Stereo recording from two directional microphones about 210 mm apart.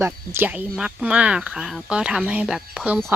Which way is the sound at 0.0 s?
10° right (ahead or behind).